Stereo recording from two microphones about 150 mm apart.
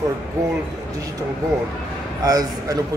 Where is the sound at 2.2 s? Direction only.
25° right (ahead or behind).